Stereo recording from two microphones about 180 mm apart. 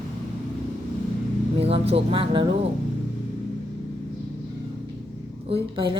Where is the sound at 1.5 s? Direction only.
35° right (ahead or behind).